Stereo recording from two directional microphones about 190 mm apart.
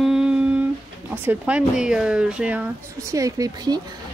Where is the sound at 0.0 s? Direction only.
5° right (ahead or behind).